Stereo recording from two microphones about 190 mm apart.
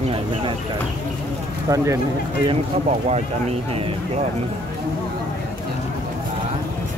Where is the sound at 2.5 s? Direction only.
35° right (ahead or behind).